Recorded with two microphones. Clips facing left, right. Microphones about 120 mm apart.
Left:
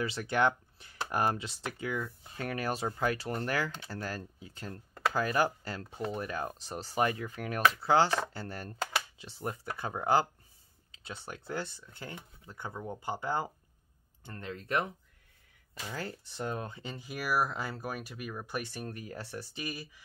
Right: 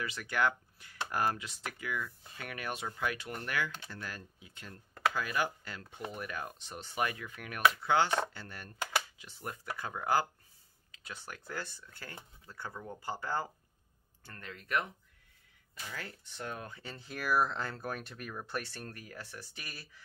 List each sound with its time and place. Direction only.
0.0 s speech: 30° left (ahead or behind)
15.9 s speech: 30° left (ahead or behind); by 19.0 s 15° left (ahead or behind)
19.0 s speech: 30° left (ahead or behind)
19.6 s speech: 15° left (ahead or behind)